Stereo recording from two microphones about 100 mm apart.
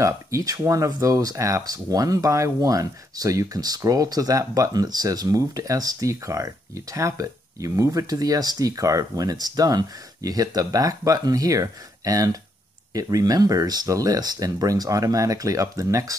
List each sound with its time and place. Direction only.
0.0 s speech: 35° right (ahead or behind)